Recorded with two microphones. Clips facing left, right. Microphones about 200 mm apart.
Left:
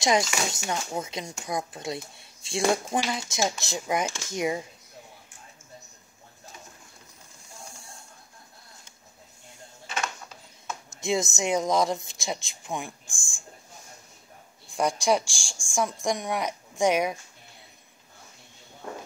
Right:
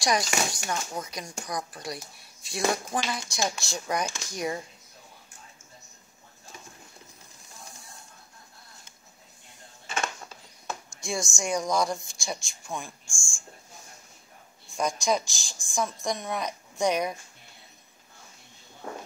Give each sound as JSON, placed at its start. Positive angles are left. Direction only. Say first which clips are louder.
{"t": 0.0, "sound": "speech", "louder": "left 2 dB", "side_deg": 25}
{"t": 10.9, "sound": "speech", "louder": "left 7 dB", "side_deg": 20}
{"t": 14.8, "sound": "a woman's voice", "louder": "left 3 dB", "side_deg": 15}